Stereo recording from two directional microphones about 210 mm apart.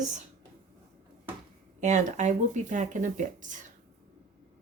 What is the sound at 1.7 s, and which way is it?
A woman's voice, 35° right (ahead or behind).